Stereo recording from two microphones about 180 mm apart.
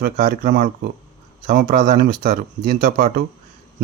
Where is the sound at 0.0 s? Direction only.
50° right (ahead or behind).